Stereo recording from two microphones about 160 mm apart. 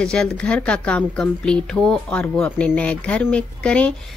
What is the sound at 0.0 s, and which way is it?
A woman's voice, 5° left (ahead or behind).